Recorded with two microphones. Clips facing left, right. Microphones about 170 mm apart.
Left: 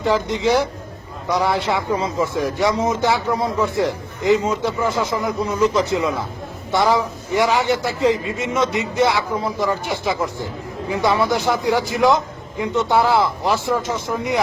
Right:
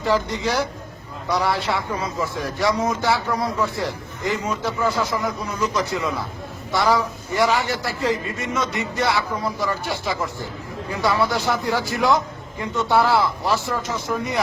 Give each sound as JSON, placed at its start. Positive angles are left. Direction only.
{"t": 0.0, "sound": "a man's voice", "side_deg": 20}